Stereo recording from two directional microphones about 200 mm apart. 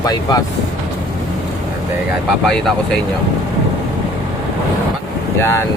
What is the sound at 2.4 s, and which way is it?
Speech, 5° left (ahead or behind).